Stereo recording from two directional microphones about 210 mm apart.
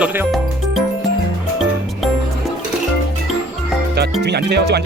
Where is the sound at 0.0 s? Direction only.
5° right (ahead or behind).